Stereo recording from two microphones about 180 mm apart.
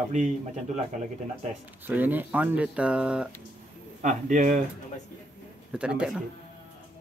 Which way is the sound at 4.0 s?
45° right (ahead or behind).